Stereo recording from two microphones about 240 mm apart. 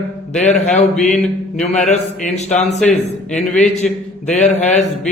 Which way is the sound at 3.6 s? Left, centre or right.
Left.